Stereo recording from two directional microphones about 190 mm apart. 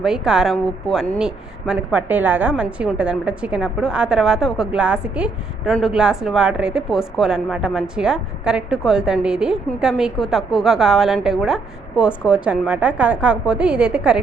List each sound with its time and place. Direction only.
0.0 s a woman's voice: centre (ahead or behind)